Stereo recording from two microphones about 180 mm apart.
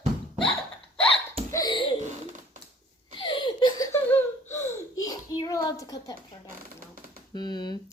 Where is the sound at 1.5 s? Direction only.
25° left (ahead or behind).